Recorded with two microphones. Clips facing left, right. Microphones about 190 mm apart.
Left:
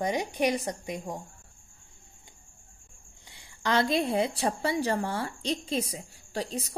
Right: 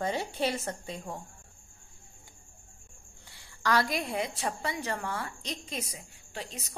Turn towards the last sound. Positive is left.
turn(degrees=35)  # may be behind; listen again after turning